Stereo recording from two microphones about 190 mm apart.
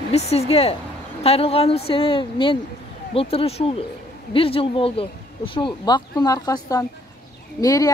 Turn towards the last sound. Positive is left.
turn(degrees=20)  # may be behind; listen again after turning